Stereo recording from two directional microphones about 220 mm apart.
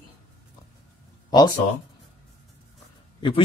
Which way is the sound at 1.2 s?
20° left (ahead or behind).